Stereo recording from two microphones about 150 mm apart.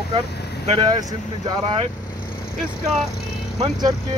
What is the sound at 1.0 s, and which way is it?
Speech, 25° right (ahead or behind).